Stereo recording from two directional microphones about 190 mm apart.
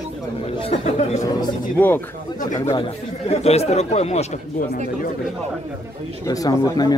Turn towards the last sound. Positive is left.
turn(degrees=20)  # may be behind; listen again after turning